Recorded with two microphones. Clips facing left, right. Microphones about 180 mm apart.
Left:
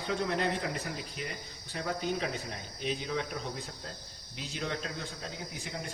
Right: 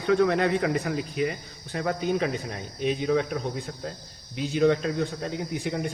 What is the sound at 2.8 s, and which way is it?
Speech, 60° right (ahead or behind).